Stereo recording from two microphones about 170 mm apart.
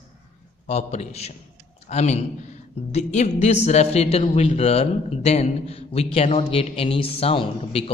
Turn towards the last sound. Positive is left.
turn(degrees=35)  # may be behind; listen again after turning